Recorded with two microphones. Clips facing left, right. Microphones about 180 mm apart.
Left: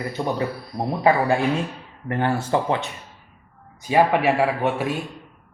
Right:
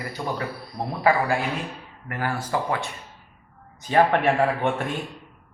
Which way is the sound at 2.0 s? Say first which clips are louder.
Left 6 dB; 25° left (ahead or behind).